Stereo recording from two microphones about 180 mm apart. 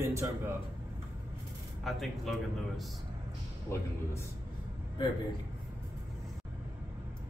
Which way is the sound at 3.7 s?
15° left (ahead or behind).